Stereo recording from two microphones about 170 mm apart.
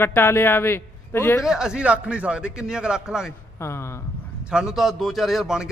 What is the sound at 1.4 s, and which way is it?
A man's voice, 5° right (ahead or behind).